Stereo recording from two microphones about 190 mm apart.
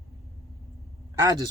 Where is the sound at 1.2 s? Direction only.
20° right (ahead or behind).